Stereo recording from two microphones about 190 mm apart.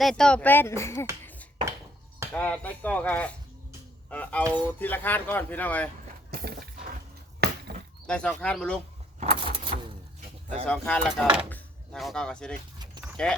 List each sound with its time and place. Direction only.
0.0 s speech: centre (ahead or behind)
2.3 s speech: 10° left (ahead or behind)
6.3 s a sound: 55° right (ahead or behind)
8.0 s speech: 5° left (ahead or behind)
9.2 s vehicle: 30° right (ahead or behind)
10.7 s speech: 5° left (ahead or behind)